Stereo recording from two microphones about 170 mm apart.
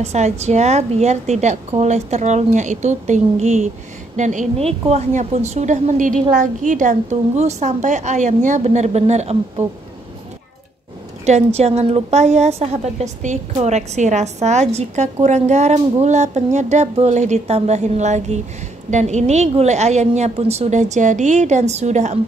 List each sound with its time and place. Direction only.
0.0 s a woman's voice: 40° right (ahead or behind)
9.6 s speech: 15° right (ahead or behind)
11.2 s a woman's voice: 40° right (ahead or behind)